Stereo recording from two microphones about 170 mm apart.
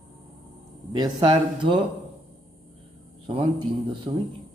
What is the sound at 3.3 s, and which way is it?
Speech, 30° right (ahead or behind).